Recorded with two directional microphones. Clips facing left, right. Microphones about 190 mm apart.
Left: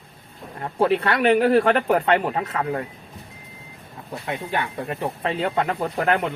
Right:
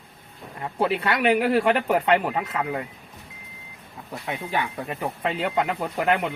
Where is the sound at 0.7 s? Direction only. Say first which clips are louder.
Left 4 dB; 40° left (ahead or behind).